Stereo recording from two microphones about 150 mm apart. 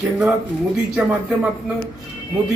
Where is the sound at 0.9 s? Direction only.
5° right (ahead or behind).